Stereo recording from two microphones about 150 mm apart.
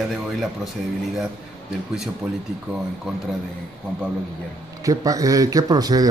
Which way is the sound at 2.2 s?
5° right (ahead or behind).